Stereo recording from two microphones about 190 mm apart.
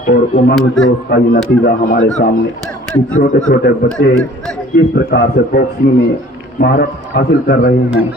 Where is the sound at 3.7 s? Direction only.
55° left (ahead or behind).